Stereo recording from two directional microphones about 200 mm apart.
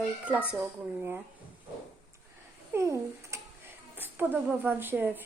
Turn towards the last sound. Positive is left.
turn(degrees=-10)  # may be behind; listen again after turning